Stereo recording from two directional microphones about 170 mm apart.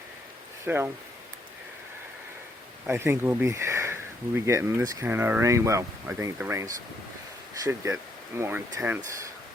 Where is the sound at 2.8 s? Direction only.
15° right (ahead or behind).